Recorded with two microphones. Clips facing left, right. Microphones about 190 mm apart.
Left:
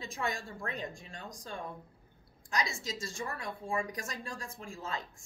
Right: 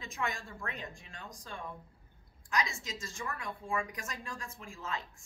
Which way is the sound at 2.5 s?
35° left (ahead or behind).